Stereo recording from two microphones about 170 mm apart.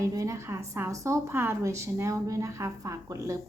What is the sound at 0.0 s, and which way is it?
A woman's voice, 15° right (ahead or behind).